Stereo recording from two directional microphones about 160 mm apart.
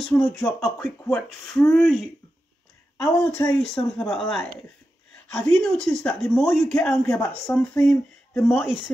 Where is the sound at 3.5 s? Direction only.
5° left (ahead or behind).